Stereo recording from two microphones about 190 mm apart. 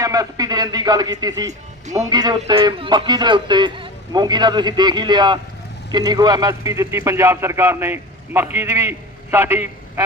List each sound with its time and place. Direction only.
0.0 s a man's voice: 20° right (ahead or behind)